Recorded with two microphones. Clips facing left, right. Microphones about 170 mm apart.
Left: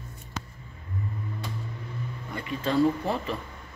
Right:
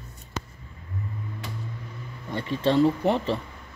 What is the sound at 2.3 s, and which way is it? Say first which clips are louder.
Speech: right 5 dB; 30° right (ahead or behind).